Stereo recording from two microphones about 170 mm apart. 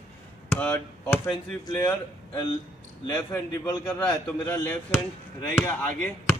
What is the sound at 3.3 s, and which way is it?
Speech, 15° left (ahead or behind).